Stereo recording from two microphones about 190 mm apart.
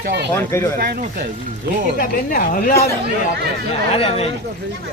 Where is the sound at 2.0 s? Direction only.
45° left (ahead or behind).